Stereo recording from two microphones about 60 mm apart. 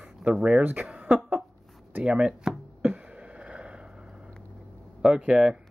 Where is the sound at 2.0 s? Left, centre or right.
Centre.